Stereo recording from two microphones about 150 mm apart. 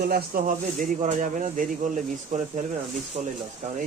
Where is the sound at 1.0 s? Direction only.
60° right (ahead or behind).